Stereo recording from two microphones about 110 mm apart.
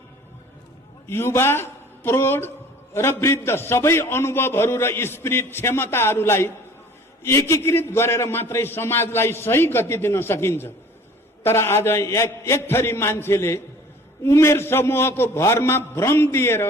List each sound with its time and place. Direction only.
1.1 s a man's voice: 20° left (ahead or behind)